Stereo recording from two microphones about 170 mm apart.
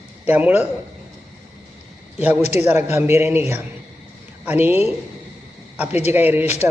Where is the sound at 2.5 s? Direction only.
15° right (ahead or behind).